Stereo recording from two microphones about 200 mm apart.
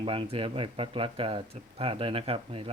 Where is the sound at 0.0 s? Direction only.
25° right (ahead or behind).